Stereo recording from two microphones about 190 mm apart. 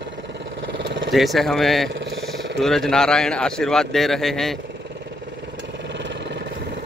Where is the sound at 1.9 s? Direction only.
70° right (ahead or behind).